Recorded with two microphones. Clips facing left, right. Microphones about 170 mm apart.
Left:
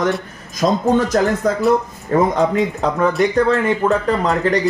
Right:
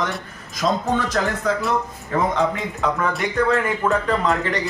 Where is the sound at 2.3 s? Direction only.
35° left (ahead or behind).